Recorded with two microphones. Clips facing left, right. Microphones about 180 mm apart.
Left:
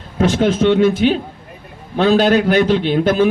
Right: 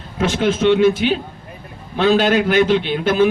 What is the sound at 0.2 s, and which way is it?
A man's voice, 40° left (ahead or behind).